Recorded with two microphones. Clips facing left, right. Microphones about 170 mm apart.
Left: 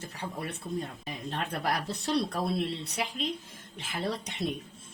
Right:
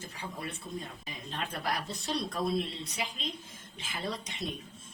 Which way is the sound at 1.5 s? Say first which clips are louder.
Left 3 dB; 65° left (ahead or behind).